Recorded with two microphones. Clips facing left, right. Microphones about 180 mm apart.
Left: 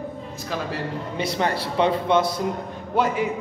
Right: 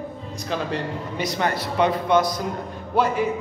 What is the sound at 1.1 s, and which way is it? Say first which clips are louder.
A man's voice: even; 30° left (ahead or behind).